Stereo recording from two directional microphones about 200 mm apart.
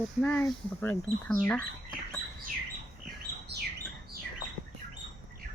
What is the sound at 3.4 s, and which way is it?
Bird, 55° right (ahead or behind).